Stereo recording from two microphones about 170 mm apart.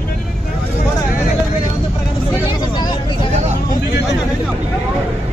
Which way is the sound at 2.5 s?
25° left (ahead or behind).